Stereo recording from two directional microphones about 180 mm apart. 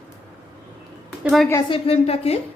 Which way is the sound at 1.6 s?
30° left (ahead or behind).